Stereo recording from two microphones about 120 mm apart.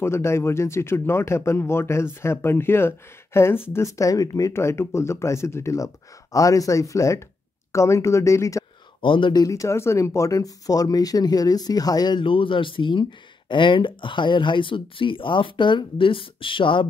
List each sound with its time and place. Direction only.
0.0 s speech: 20° left (ahead or behind)
9.0 s speech: 45° left (ahead or behind)